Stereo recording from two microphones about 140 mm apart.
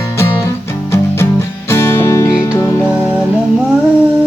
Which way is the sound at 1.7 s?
20° left (ahead or behind).